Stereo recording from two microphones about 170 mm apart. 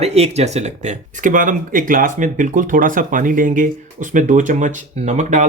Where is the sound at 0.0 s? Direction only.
40° right (ahead or behind).